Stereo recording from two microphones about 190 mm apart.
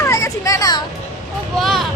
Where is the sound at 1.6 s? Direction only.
Centre (ahead or behind).